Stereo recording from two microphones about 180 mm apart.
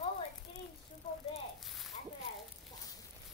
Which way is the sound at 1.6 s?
Centre (ahead or behind).